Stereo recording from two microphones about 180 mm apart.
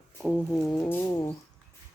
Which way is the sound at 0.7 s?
10° left (ahead or behind).